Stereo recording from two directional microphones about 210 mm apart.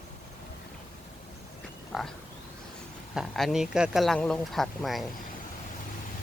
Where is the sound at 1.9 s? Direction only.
Centre (ahead or behind).